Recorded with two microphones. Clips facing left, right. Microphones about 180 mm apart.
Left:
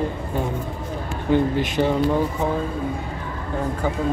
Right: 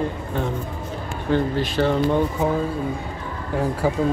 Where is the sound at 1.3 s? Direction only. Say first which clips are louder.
Left 1 dB; 15° left (ahead or behind).